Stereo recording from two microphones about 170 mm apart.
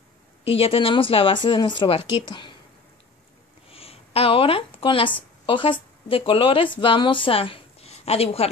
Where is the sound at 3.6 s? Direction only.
35° left (ahead or behind).